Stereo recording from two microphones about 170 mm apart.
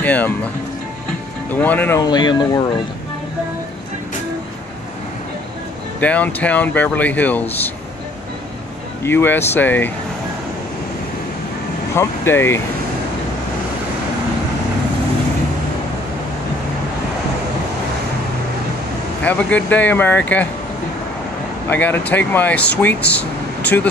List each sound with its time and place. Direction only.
0.0 s speech: 10° left (ahead or behind)
1.5 s speech: 10° left (ahead or behind)
2.0 s speech: 25° left (ahead or behind)
5.9 s speech: 10° left (ahead or behind)
9.0 s speech: 10° left (ahead or behind)
11.9 s speech: 15° left (ahead or behind)
19.2 s speech: 10° left (ahead or behind)
21.6 s speech: 10° left (ahead or behind)